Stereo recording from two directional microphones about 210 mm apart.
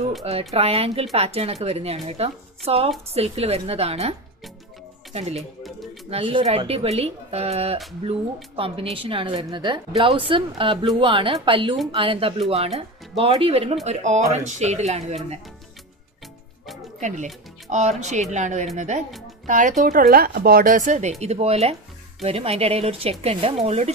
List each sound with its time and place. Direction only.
0.2 s a woman's voice: 30° right (ahead or behind)
6.0 s a woman's voice: 25° right (ahead or behind)
17.0 s a woman's voice: 35° right (ahead or behind)